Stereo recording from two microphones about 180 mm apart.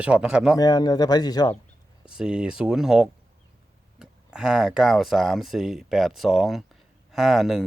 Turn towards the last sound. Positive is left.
turn(degrees=0)  # may be behind; listen again after turning